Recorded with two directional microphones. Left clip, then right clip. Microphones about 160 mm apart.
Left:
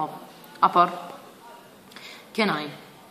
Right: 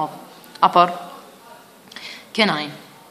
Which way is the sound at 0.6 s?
35° right (ahead or behind).